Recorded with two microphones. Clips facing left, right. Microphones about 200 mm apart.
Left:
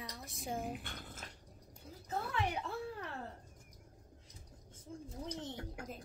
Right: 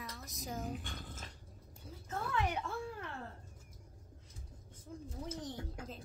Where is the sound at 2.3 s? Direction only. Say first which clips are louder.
Right 3 dB; 35° left (ahead or behind).